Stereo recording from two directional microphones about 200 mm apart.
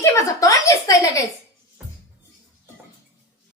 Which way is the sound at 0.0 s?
15° left (ahead or behind).